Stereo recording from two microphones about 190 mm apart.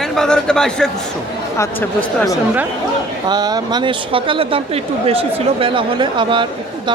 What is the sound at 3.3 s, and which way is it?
Speech, 20° right (ahead or behind).